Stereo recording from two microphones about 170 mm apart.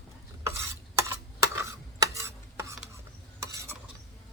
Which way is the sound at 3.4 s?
15° right (ahead or behind).